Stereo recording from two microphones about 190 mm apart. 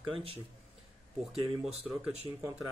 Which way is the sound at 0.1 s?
30° right (ahead or behind).